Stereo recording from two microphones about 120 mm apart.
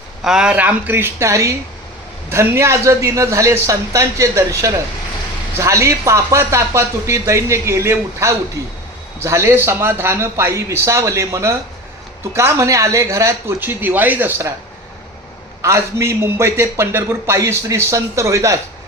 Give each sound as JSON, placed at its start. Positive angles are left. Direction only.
{"t": 0.3, "sound": "a man's voice", "side_deg": -5}
{"t": 15.6, "sound": "a man's voice", "side_deg": -25}